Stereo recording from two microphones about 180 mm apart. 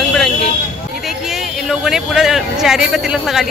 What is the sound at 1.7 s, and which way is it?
Speech, centre (ahead or behind).